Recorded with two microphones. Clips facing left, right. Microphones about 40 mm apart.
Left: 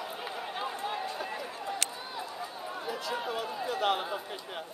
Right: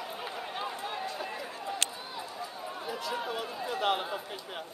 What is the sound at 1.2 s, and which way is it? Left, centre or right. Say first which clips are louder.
Run: left 1 dB; centre.